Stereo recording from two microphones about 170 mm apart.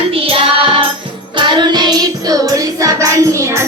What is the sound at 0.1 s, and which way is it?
Music, 35° right (ahead or behind).